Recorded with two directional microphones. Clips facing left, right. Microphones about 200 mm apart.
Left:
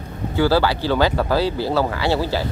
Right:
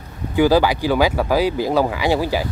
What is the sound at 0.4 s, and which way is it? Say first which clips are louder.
Speech: right 3 dB; 15° right (ahead or behind).